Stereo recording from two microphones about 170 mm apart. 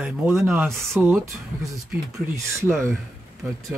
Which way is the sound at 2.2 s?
15° right (ahead or behind).